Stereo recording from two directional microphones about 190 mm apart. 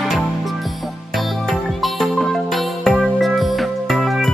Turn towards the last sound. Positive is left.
turn(degrees=0)  # may be behind; listen again after turning